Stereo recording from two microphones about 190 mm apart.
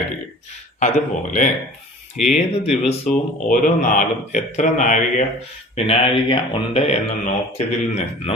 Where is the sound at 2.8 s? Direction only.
45° left (ahead or behind).